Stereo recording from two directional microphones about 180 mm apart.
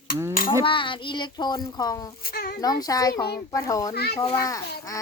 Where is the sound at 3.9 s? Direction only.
60° left (ahead or behind).